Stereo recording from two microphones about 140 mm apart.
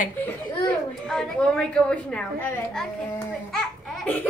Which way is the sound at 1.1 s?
5° left (ahead or behind).